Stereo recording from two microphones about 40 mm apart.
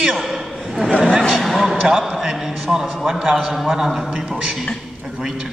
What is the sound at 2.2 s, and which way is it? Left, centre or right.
A man's voice, centre.